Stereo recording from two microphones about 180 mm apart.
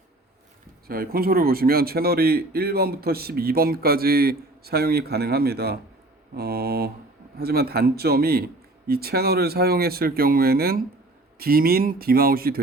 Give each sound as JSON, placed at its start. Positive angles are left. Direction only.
{"t": 0.9, "sound": "a man's voice", "side_deg": -55}